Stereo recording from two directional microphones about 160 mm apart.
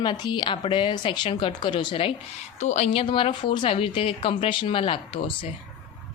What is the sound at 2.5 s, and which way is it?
A woman's voice, 45° left (ahead or behind).